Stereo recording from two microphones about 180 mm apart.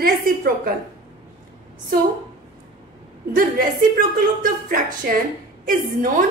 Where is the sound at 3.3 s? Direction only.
50° right (ahead or behind).